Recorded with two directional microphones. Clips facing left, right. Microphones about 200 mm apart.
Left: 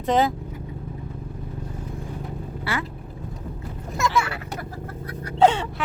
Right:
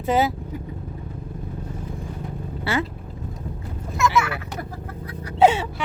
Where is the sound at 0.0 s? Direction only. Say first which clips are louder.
Even; 5° right (ahead or behind).